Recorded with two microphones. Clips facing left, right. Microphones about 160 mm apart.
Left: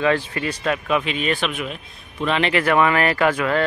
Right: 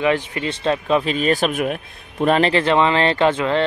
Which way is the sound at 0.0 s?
20° right (ahead or behind).